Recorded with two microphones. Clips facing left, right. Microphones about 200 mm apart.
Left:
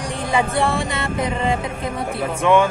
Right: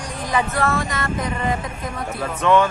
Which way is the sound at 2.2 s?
10° left (ahead or behind).